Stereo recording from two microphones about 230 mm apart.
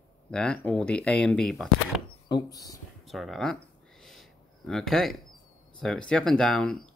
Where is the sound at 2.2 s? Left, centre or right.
Centre.